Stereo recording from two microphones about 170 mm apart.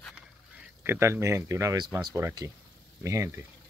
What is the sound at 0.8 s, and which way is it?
Speech, 15° right (ahead or behind).